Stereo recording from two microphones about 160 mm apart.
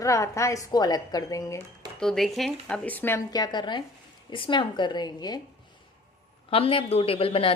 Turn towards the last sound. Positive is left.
turn(degrees=35)  # may be behind; listen again after turning